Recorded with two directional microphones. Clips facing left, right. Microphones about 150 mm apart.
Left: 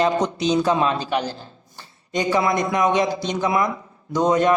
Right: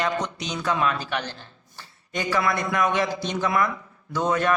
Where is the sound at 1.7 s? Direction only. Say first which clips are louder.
Left 6 dB; 20° left (ahead or behind).